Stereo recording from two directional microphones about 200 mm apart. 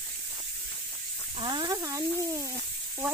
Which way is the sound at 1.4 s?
20° right (ahead or behind).